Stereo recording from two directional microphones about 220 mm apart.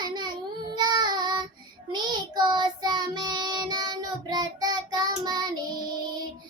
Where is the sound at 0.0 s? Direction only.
20° right (ahead or behind).